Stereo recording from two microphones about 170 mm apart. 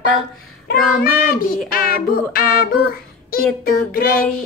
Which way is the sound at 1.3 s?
55° left (ahead or behind).